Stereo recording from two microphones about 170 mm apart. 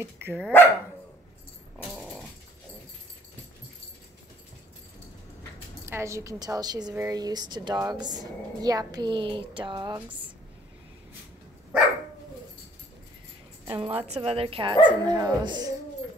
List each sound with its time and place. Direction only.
0.0 s speech: 15° right (ahead or behind)
0.4 s speech: 10° left (ahead or behind)
1.9 s dog: centre (ahead or behind)
5.9 s a woman's voice: 15° right (ahead or behind)
13.7 s a woman's voice: 35° right (ahead or behind)